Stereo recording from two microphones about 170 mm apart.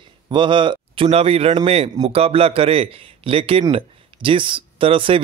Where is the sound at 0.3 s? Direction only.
30° right (ahead or behind).